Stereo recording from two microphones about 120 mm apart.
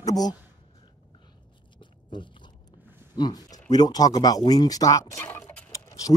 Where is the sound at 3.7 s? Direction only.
30° left (ahead or behind).